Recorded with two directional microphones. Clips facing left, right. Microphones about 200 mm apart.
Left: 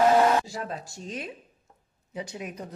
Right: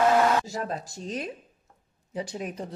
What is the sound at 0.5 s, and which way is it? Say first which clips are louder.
Speech: right 3 dB; 40° right (ahead or behind).